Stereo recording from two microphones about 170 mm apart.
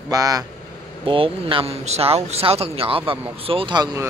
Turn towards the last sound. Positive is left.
turn(degrees=-25)  # may be behind; listen again after turning